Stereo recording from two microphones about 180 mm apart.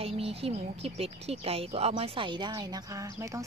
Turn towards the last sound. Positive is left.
turn(degrees=-15)  # may be behind; listen again after turning